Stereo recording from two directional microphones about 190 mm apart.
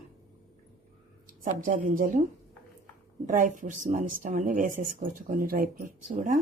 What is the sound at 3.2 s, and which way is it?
Speech, 40° right (ahead or behind).